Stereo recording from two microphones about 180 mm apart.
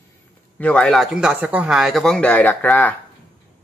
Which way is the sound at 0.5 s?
5° left (ahead or behind).